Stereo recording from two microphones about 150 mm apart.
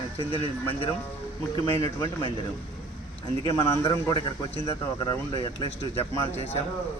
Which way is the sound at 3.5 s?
25° left (ahead or behind).